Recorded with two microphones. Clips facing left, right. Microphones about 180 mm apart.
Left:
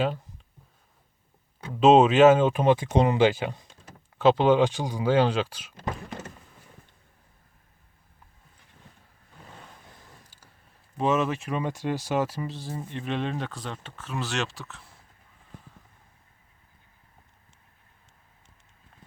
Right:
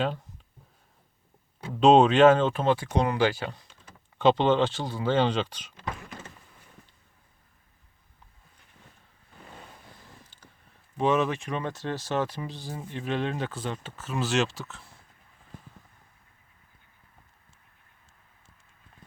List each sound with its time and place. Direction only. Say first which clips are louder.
1.7 s speech: left 1 dB; 5° left (ahead or behind); by 3.5 s 20° left (ahead or behind)
4.2 s speech: left 2 dB; 5° left (ahead or behind)
10.9 s speech: even; centre (ahead or behind)